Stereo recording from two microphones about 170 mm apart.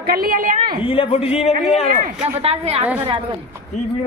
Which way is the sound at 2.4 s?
40° right (ahead or behind).